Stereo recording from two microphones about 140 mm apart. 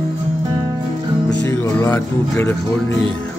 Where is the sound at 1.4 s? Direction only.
20° left (ahead or behind).